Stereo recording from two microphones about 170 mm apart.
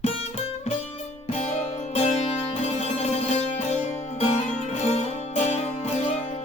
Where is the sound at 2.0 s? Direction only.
40° left (ahead or behind).